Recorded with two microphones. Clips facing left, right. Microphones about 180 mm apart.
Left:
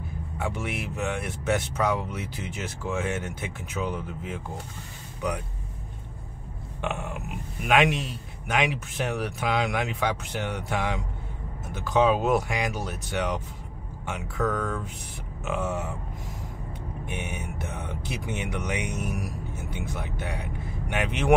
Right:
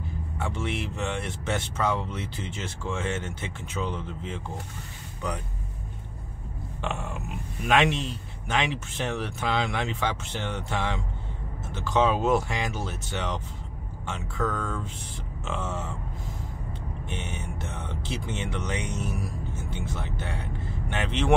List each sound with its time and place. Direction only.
0.4 s speech: 10° left (ahead or behind)
6.8 s speech: 15° left (ahead or behind)
14.4 s speech: centre (ahead or behind)
17.0 s speech: 10° left (ahead or behind)